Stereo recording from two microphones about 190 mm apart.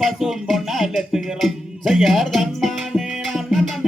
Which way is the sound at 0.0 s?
Centre (ahead or behind).